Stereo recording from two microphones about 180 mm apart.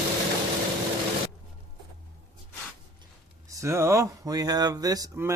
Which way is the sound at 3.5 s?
15° right (ahead or behind).